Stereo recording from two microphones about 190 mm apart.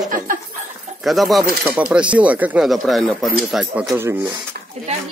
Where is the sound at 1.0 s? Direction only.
Centre (ahead or behind).